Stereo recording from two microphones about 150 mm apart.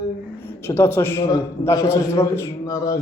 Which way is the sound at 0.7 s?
15° left (ahead or behind).